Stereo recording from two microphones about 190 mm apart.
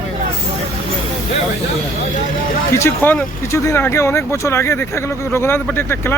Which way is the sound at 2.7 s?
15° left (ahead or behind).